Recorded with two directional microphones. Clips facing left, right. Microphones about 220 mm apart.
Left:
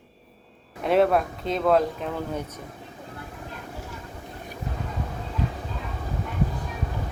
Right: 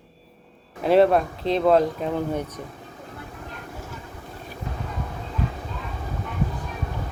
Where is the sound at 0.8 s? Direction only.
Centre (ahead or behind).